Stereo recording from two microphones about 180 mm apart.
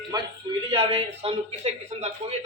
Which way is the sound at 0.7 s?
30° right (ahead or behind).